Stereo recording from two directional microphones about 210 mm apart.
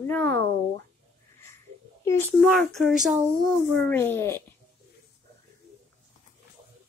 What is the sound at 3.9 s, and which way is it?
Speech, 10° left (ahead or behind).